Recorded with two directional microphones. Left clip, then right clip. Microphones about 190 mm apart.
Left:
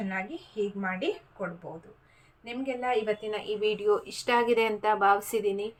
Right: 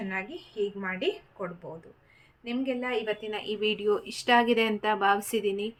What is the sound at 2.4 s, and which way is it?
A woman's voice, 20° right (ahead or behind).